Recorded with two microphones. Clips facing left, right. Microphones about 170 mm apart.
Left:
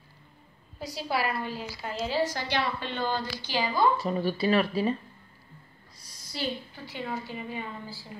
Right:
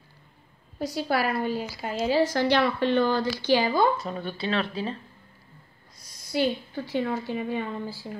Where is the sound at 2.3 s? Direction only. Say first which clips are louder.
Right 8 dB; 60° right (ahead or behind).